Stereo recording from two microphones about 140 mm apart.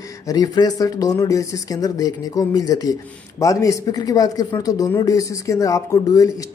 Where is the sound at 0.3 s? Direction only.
25° left (ahead or behind).